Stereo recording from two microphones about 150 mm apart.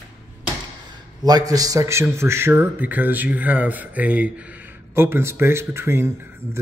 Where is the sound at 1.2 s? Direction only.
25° right (ahead or behind).